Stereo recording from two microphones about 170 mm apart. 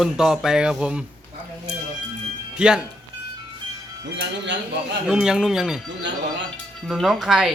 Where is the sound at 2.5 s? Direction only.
5° right (ahead or behind).